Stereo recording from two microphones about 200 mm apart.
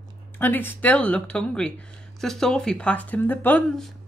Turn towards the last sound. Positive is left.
turn(degrees=10)  # may be behind; listen again after turning